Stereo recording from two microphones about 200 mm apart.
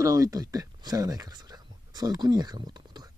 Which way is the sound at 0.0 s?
15° right (ahead or behind).